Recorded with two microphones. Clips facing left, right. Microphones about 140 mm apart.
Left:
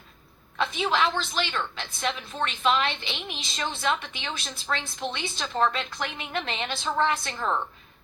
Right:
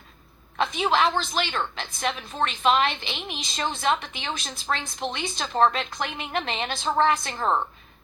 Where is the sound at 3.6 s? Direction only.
40° right (ahead or behind).